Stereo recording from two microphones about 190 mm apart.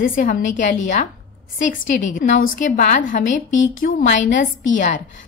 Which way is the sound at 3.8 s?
55° left (ahead or behind).